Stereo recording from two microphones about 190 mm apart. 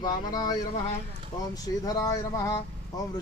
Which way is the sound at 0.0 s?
20° left (ahead or behind).